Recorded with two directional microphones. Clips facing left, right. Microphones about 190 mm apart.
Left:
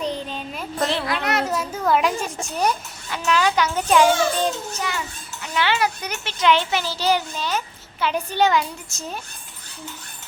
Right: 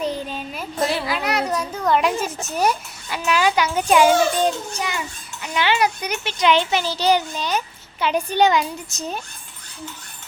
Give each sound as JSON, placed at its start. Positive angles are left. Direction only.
{"t": 0.0, "sound": "a child's voice", "side_deg": -5}